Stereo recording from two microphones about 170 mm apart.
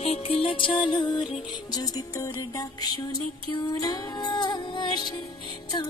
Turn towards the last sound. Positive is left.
turn(degrees=25)  # may be behind; listen again after turning